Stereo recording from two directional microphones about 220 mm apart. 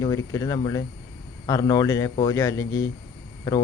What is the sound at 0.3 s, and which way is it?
A man's voice, 15° left (ahead or behind).